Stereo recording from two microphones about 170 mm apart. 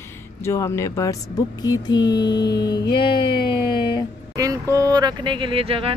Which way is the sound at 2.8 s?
70° left (ahead or behind).